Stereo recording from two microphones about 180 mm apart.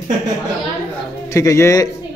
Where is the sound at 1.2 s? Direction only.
15° left (ahead or behind).